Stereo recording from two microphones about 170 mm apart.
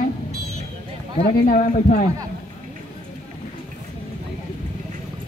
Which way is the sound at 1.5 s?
45° left (ahead or behind).